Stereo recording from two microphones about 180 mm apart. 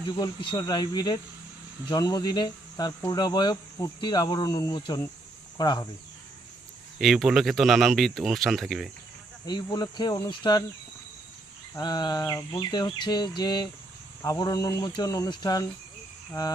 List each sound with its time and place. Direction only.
0.0 s speech: 25° left (ahead or behind)
7.0 s speech: centre (ahead or behind)
9.5 s speech: 25° left (ahead or behind)
11.7 s speech: 25° left (ahead or behind)